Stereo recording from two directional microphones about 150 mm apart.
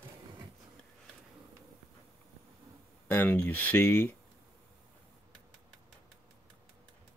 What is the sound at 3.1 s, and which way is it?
Speech, 10° left (ahead or behind).